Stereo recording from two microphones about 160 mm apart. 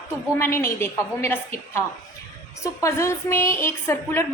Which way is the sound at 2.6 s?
20° left (ahead or behind).